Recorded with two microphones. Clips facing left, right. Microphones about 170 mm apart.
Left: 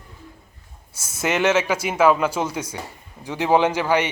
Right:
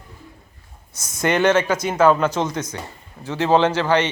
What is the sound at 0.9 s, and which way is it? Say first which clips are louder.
Speech: right 3 dB; 10° left (ahead or behind).